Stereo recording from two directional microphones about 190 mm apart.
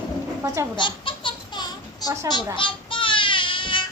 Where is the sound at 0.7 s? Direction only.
25° left (ahead or behind).